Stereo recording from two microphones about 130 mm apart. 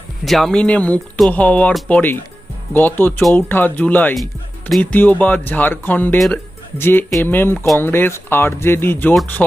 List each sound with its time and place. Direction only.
0.3 s speech: centre (ahead or behind)
6.1 s speech: centre (ahead or behind)
6.7 s speech: 15° left (ahead or behind)